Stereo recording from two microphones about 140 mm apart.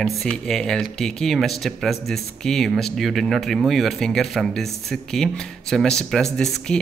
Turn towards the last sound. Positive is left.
turn(degrees=5)  # may be behind; listen again after turning